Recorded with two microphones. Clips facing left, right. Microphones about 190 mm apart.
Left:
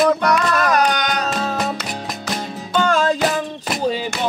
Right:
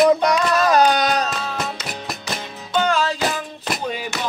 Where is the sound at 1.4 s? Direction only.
45° left (ahead or behind).